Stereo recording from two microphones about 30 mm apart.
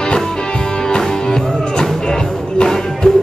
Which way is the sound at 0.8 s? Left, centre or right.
Left.